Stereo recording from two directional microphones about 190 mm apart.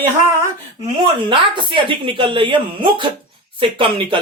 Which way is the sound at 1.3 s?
25° right (ahead or behind).